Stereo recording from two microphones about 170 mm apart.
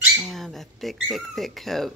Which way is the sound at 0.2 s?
Centre (ahead or behind).